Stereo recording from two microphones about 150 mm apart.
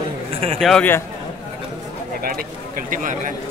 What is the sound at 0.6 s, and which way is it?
Speech, centre (ahead or behind).